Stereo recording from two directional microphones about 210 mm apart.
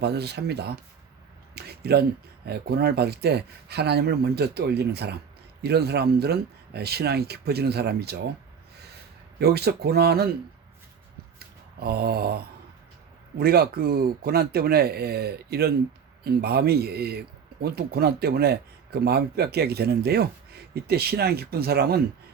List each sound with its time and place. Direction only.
0.0 s speech: 50° right (ahead or behind)
1.5 s a sound: 50° right (ahead or behind)
2.5 s speech: 50° right (ahead or behind)
9.4 s speech: 50° right (ahead or behind)
11.3 s a sound: 50° right (ahead or behind)
13.4 s speech: 45° right (ahead or behind)